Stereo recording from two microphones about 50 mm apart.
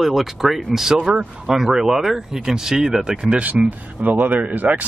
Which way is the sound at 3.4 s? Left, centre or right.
Right.